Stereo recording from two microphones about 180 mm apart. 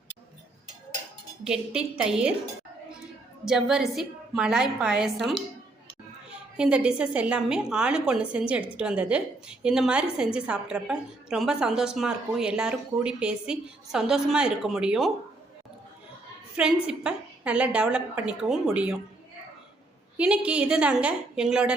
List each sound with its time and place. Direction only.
1.5 s a woman's voice: 5° right (ahead or behind)
3.4 s a woman's voice: 5° right (ahead or behind)
6.6 s a woman's voice: 5° right (ahead or behind)
16.6 s a woman's voice: 5° right (ahead or behind)
20.1 s a woman's voice: 5° right (ahead or behind)